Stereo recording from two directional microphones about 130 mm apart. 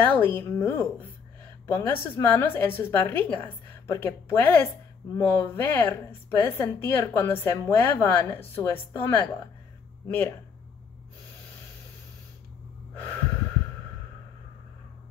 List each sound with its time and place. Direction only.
0.0 s a woman's voice: 15° left (ahead or behind)